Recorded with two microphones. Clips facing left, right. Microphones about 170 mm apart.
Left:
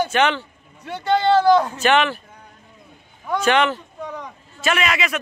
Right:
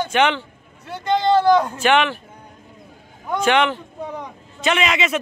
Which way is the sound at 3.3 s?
15° right (ahead or behind).